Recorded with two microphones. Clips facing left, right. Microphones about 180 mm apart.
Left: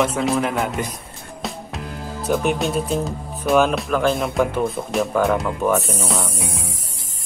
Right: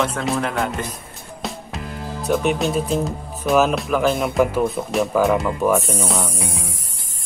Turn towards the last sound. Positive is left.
turn(degrees=0)  # may be behind; listen again after turning